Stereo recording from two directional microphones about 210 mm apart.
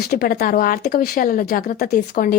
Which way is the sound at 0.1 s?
45° left (ahead or behind).